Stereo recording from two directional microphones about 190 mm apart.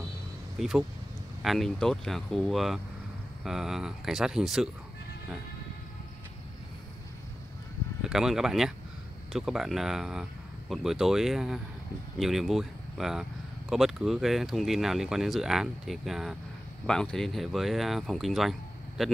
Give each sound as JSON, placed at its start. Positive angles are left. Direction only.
{"t": 0.6, "sound": "speech", "side_deg": 0}
{"t": 8.0, "sound": "speech", "side_deg": 0}